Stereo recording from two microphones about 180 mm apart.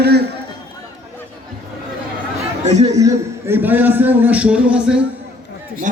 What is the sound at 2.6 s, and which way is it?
Speech, 40° right (ahead or behind).